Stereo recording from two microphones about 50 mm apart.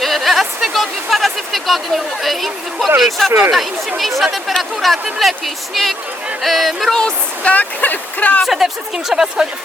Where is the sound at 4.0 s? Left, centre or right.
Centre.